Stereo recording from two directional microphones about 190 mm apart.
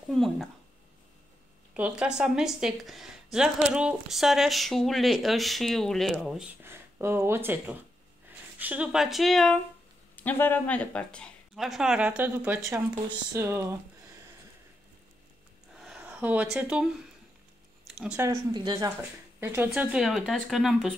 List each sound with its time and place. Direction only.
0.1 s a woman's voice: centre (ahead or behind)
1.7 s a woman's voice: 5° right (ahead or behind)
15.7 s a sound: 5° right (ahead or behind)
18.2 s speech: 20° right (ahead or behind)
19.4 s a woman's voice: 10° right (ahead or behind)